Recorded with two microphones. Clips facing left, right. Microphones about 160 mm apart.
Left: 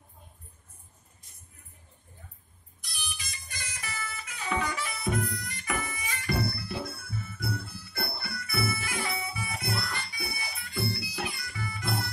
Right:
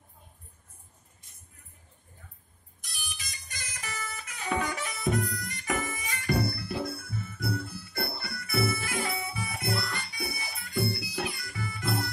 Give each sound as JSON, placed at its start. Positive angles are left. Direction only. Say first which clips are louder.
{"t": 2.8, "sound": "music", "louder": "left 2 dB", "side_deg": -45}